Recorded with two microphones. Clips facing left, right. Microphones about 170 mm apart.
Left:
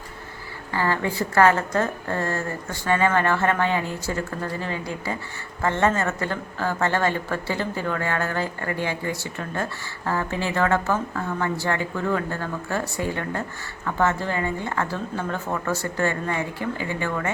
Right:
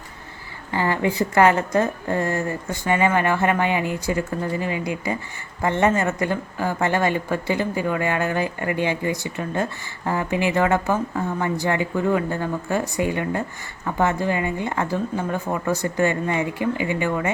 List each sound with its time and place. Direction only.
0.7 s a woman's voice: 15° right (ahead or behind)